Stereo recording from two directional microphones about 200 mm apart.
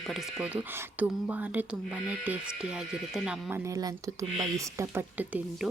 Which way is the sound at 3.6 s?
20° right (ahead or behind).